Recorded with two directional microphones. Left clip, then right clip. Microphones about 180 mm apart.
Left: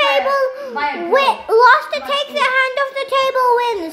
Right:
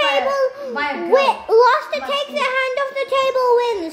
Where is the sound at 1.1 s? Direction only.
15° left (ahead or behind).